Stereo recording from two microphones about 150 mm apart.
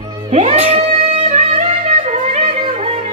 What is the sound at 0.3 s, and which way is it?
Music, 50° right (ahead or behind).